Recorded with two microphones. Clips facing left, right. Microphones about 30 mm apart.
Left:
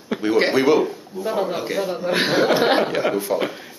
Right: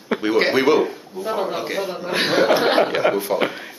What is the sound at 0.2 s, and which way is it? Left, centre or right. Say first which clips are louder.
Speech: even; centre.